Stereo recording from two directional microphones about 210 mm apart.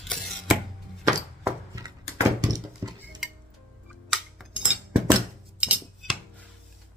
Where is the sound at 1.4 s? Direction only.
15° right (ahead or behind).